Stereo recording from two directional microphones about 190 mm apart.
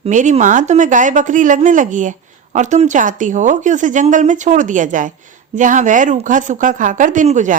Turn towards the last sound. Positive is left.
turn(degrees=-40)  # may be behind; listen again after turning